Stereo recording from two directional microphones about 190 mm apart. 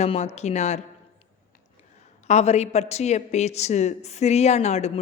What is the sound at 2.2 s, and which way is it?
A woman's voice, 35° left (ahead or behind).